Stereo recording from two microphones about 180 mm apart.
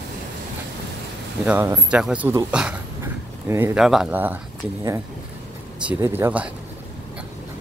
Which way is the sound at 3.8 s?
5° right (ahead or behind).